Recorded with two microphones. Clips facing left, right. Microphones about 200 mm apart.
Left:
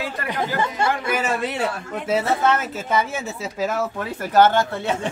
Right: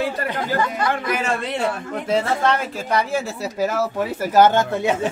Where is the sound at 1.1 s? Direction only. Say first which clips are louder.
Even; 5° left (ahead or behind); by 5.1 s 15° right (ahead or behind).